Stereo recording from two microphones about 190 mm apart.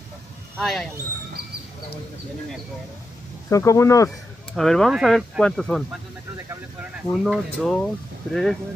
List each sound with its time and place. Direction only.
0.6 s speech: centre (ahead or behind)
3.4 s speech: 15° left (ahead or behind)
4.6 s speech: centre (ahead or behind)
6.3 s speech: 10° right (ahead or behind)
7.1 s speech: 5° left (ahead or behind)